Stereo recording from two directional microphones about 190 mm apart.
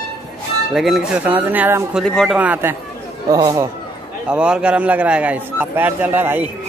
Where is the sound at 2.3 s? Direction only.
10° right (ahead or behind).